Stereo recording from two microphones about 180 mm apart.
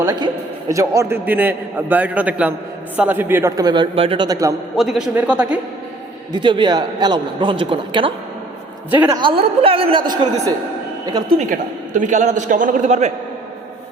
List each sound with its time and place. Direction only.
0.0 s a man's voice: 20° right (ahead or behind)
4.8 s a man's voice: centre (ahead or behind)
6.3 s a man's voice: 25° right (ahead or behind)
9.1 s a man's voice: 30° right (ahead or behind)
11.9 s a man's voice: 45° right (ahead or behind)